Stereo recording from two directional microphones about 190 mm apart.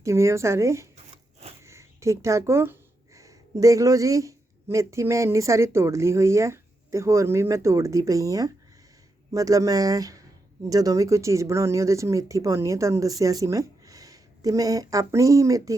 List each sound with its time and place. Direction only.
0.0 s speech: 15° right (ahead or behind)
1.1 s a sound: 30° right (ahead or behind)
1.6 s speech: 15° right (ahead or behind)